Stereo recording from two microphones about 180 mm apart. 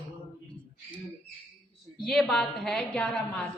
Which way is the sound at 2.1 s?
5° left (ahead or behind).